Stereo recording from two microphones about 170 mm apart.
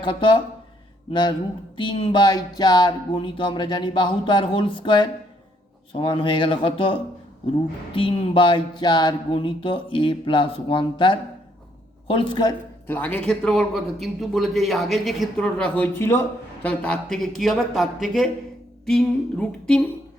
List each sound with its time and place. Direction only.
0.0 s speech: 30° left (ahead or behind)
12.9 s a man's voice: 10° left (ahead or behind)